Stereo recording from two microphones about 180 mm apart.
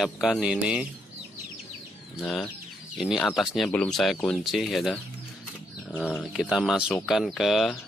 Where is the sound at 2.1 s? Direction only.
Centre (ahead or behind).